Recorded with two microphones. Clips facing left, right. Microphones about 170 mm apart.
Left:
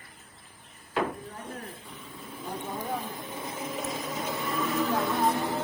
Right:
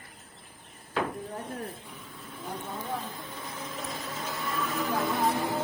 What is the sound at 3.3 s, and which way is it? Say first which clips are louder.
Printer: left 4 dB; 20° left (ahead or behind).